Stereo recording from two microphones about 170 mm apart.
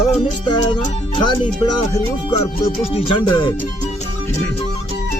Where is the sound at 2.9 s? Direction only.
30° left (ahead or behind).